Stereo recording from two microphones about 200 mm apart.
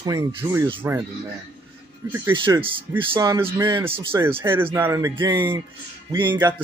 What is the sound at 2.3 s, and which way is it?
A man's voice, 25° right (ahead or behind).